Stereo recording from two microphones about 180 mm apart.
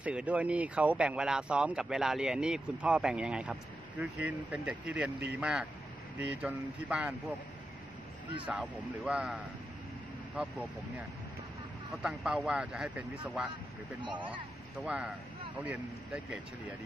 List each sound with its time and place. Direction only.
0.0 s speech: 5° right (ahead or behind)
8.5 s speech: 5° right (ahead or behind)
11.9 s speech: centre (ahead or behind)
14.9 s speech: 5° right (ahead or behind)